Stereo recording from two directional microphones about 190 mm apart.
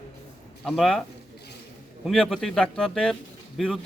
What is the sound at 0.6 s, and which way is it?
Speech, centre (ahead or behind).